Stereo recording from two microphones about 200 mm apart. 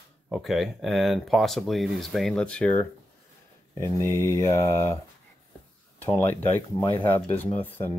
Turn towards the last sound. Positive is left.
turn(degrees=10)  # may be behind; listen again after turning